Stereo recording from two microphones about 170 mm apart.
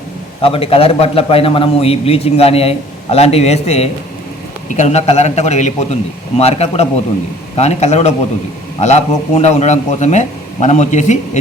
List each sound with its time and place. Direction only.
0.4 s a man's voice: 35° left (ahead or behind)